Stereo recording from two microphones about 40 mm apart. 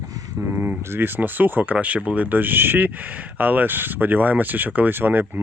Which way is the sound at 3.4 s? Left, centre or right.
Right.